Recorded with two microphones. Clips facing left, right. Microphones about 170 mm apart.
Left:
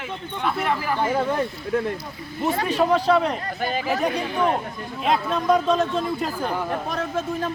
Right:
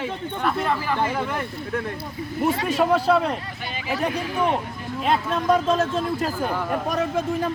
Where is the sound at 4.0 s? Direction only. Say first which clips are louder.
Right 2 dB; centre (ahead or behind).